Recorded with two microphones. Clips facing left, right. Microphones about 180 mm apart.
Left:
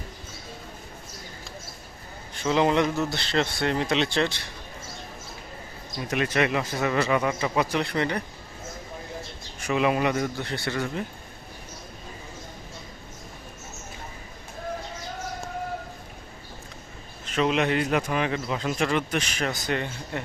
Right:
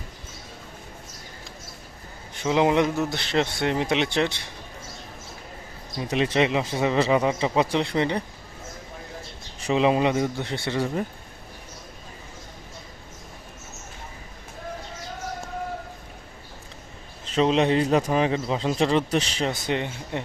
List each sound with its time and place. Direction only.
2.4 s speech: 15° right (ahead or behind)
6.0 s a man's voice: 25° right (ahead or behind)
9.6 s a man's voice: 25° right (ahead or behind)
17.3 s a man's voice: 30° right (ahead or behind)